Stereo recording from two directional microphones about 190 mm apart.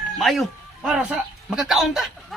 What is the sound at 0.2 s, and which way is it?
A man's voice, centre (ahead or behind).